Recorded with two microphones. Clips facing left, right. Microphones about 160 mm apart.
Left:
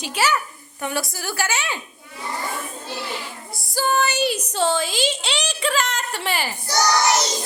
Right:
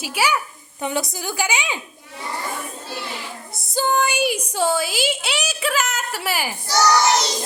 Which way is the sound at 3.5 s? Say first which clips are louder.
Right 1 dB; 20° right (ahead or behind).